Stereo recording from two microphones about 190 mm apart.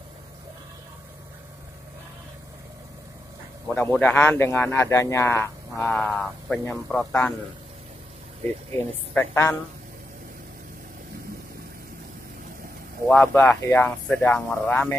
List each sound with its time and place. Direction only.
3.7 s speech: 10° left (ahead or behind)
9.1 s speech: 10° left (ahead or behind)
13.1 s speech: 5° left (ahead or behind)